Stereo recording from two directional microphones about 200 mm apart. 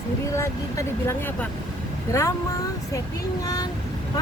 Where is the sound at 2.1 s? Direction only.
15° left (ahead or behind).